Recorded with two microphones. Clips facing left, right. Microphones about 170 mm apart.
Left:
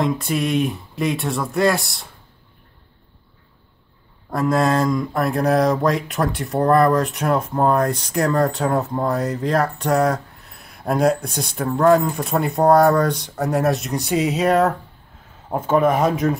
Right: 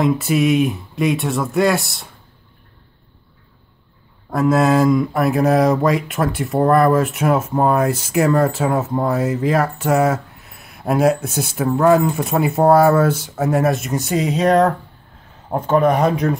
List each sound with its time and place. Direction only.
0.0 s speech: centre (ahead or behind)
4.3 s speech: centre (ahead or behind)